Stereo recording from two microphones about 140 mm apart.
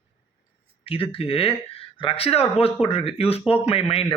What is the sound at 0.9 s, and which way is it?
Speech, 40° left (ahead or behind).